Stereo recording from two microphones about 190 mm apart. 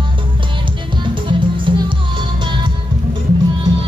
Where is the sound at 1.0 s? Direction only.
25° right (ahead or behind).